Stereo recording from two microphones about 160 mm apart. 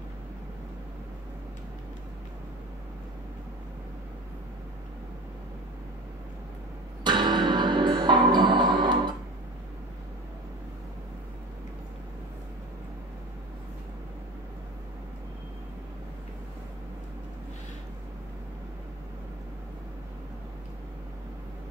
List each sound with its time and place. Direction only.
7.0 s music: 30° right (ahead or behind)